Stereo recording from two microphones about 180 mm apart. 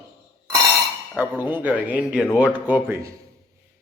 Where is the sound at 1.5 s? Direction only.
10° right (ahead or behind).